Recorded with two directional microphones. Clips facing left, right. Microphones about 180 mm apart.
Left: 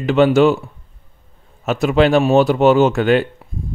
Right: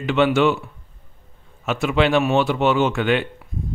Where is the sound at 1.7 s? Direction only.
40° left (ahead or behind).